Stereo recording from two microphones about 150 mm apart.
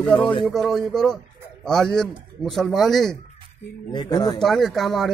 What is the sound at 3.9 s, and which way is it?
Speech, 25° left (ahead or behind).